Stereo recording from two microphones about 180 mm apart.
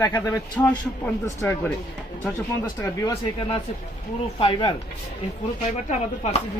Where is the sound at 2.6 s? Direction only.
20° left (ahead or behind).